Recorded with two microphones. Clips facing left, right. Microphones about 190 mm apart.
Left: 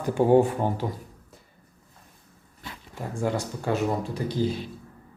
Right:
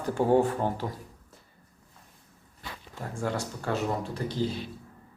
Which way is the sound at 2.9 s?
15° left (ahead or behind).